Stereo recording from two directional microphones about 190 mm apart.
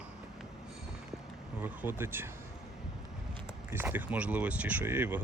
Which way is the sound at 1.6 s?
10° right (ahead or behind).